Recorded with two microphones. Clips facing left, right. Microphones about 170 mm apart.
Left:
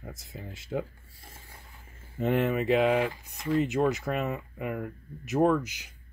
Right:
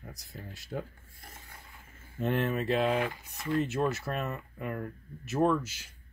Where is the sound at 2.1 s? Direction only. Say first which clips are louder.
Left 4 dB; 15° left (ahead or behind).